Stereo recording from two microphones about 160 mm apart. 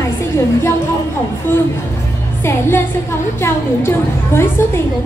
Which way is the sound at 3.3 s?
15° left (ahead or behind).